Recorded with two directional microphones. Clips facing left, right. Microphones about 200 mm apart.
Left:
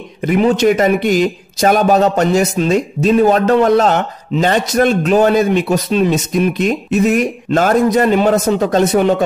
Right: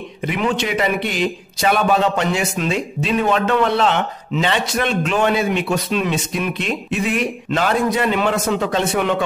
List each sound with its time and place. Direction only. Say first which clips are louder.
0.2 s a man's voice: left 9 dB; 40° left (ahead or behind)